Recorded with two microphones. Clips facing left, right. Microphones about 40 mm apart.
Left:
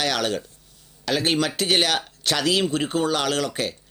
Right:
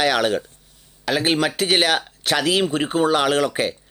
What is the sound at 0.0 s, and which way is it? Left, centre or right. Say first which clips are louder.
Speech: right 5 dB; centre.